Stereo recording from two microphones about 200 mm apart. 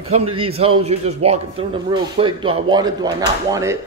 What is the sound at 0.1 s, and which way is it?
A man's voice, 30° right (ahead or behind).